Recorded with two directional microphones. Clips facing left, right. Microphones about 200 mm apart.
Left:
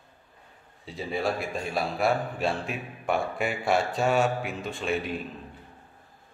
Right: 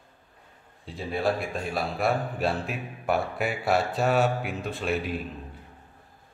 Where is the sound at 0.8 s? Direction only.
Centre (ahead or behind).